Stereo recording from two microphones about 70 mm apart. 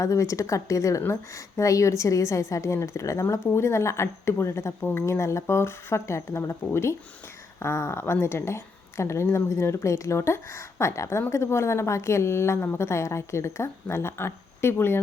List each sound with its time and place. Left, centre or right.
0.0 s a woman's voice: left
7.6 s a woman's voice: left